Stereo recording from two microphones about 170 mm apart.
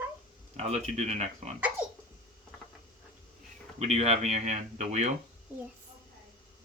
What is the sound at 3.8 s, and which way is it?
Speech, 40° right (ahead or behind).